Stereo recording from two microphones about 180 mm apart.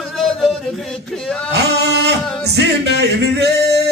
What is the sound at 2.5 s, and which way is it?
Music, 70° right (ahead or behind).